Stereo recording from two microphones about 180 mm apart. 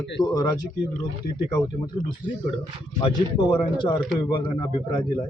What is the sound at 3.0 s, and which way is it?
Speech, 30° left (ahead or behind).